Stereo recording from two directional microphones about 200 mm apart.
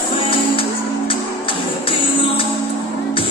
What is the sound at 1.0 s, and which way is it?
Music, 25° left (ahead or behind).